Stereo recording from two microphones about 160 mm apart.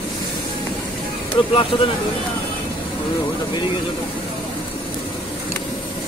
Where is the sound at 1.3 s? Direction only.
35° left (ahead or behind).